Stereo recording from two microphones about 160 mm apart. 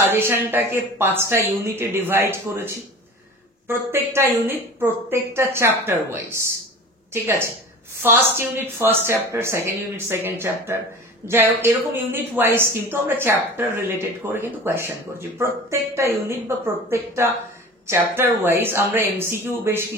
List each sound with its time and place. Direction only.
0.0 s speech: 15° right (ahead or behind)
8.0 s speech: 15° right (ahead or behind)